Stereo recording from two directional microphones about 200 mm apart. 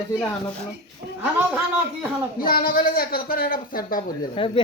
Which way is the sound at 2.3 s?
45° left (ahead or behind).